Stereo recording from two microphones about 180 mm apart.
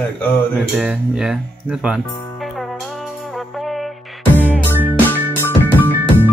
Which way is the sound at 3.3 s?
Centre (ahead or behind).